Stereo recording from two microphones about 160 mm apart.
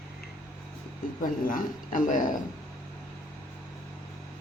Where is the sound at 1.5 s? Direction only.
55° left (ahead or behind).